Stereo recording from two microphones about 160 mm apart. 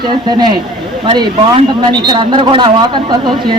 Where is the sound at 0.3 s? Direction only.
25° right (ahead or behind).